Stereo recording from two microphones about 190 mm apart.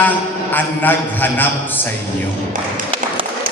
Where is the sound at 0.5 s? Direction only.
10° left (ahead or behind).